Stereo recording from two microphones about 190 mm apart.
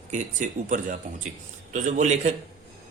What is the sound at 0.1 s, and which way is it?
Speech, 40° right (ahead or behind).